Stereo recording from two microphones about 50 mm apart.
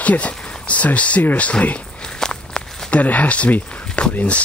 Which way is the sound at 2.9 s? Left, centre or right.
Left.